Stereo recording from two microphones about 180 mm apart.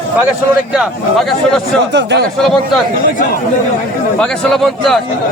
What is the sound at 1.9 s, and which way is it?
Speech, 75° right (ahead or behind).